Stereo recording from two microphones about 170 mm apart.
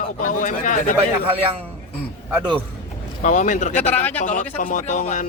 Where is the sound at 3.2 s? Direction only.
45° left (ahead or behind).